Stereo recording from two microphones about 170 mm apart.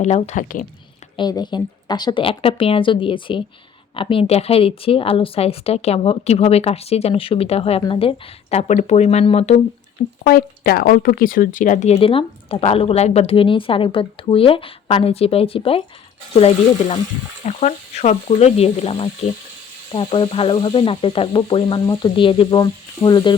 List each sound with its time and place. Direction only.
0.0 s speech: 40° left (ahead or behind)
1.1 s a woman's voice: 25° left (ahead or behind)
10.2 s speech: 60° left (ahead or behind); by 23.3 s 25° left (ahead or behind)